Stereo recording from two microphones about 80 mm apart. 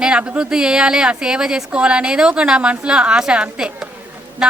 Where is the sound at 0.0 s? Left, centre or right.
Centre.